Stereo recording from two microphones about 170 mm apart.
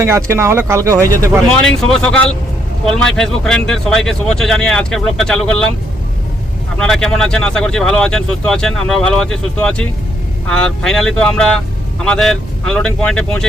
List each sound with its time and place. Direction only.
0.0 s speech: 15° right (ahead or behind)
1.6 s speech: 5° left (ahead or behind)
6.7 s speech: 5° left (ahead or behind)